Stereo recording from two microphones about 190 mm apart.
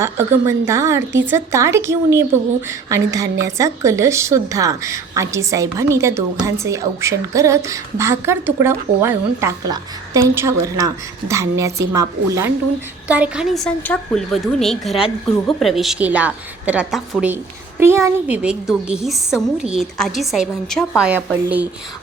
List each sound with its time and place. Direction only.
0.0 s a woman's voice: 15° right (ahead or behind)
13.1 s a woman's voice: 5° right (ahead or behind)